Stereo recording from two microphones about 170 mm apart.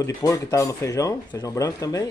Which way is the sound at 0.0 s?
20° left (ahead or behind).